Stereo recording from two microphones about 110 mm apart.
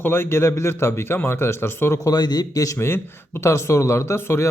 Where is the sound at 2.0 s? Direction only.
35° left (ahead or behind).